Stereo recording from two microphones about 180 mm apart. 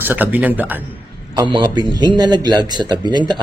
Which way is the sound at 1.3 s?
25° right (ahead or behind).